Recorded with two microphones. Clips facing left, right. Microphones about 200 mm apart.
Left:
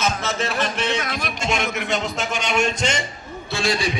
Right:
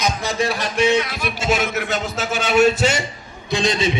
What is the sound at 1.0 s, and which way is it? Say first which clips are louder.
Music: right 4 dB; 45° left (ahead or behind).